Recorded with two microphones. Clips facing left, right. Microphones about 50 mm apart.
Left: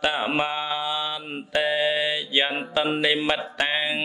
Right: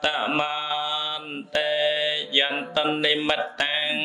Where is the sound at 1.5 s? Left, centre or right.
Centre.